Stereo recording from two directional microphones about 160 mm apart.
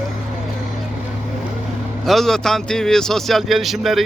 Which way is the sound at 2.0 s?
Centre (ahead or behind).